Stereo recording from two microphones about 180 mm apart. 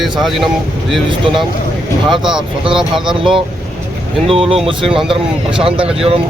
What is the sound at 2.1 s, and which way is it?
Speech, 5° right (ahead or behind).